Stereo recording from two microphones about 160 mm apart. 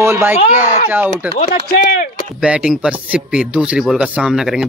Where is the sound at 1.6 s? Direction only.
55° left (ahead or behind).